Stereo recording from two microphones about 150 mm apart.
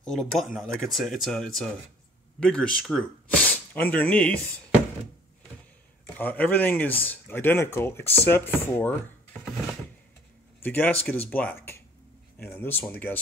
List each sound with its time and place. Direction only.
0.0 s speech: 5° left (ahead or behind)
6.1 s speech: 10° left (ahead or behind)
10.6 s speech: 10° left (ahead or behind)